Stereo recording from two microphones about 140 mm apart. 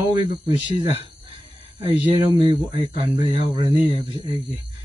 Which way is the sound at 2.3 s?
40° right (ahead or behind).